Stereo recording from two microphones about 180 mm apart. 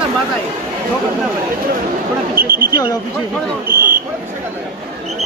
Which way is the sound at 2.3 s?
55° right (ahead or behind).